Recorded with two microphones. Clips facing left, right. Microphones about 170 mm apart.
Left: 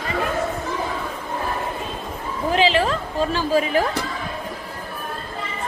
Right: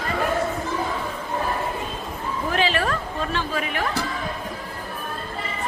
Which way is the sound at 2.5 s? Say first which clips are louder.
Left 5 dB; 25° left (ahead or behind).